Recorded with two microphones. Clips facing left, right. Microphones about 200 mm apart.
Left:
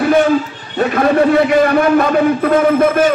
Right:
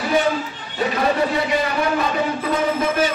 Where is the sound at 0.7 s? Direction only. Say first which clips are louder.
Left 7 dB; 55° left (ahead or behind).